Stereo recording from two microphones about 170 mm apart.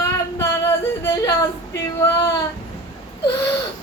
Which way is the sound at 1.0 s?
20° left (ahead or behind).